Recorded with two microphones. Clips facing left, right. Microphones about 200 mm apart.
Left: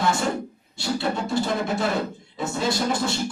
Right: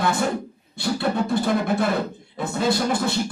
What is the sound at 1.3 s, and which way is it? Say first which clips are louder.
Music: right 3 dB; 55° right (ahead or behind).